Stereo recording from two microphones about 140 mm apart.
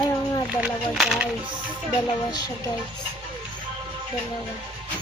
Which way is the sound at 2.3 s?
30° left (ahead or behind).